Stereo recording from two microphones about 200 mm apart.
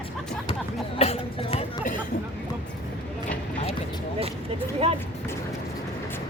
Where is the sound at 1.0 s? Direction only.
30° left (ahead or behind).